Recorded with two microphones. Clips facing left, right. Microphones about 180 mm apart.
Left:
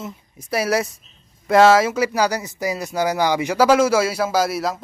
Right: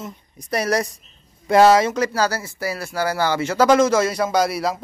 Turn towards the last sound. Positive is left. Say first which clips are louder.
# even
turn(degrees=0)  # may be behind; listen again after turning